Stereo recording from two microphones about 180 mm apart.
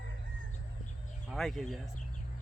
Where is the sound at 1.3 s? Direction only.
Centre (ahead or behind).